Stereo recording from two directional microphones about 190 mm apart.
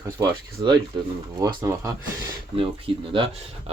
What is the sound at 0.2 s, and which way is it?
Speech, 25° right (ahead or behind).